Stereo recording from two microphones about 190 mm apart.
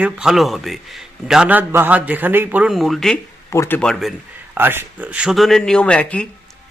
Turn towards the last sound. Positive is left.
turn(degrees=5)  # may be behind; listen again after turning